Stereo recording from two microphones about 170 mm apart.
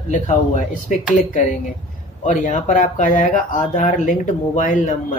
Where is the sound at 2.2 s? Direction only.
50° left (ahead or behind).